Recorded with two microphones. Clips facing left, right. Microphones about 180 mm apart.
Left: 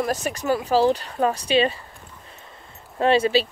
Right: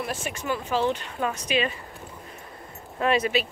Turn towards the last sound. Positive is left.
turn(degrees=30)  # may be behind; listen again after turning